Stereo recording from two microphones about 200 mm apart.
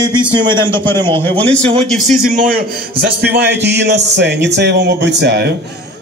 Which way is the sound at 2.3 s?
40° right (ahead or behind).